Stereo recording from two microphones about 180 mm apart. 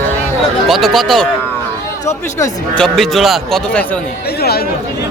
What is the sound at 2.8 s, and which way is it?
A man's voice, centre (ahead or behind).